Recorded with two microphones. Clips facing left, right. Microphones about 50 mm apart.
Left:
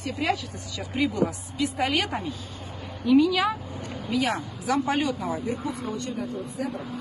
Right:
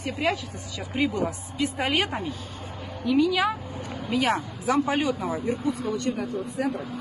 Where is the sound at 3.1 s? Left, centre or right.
Centre.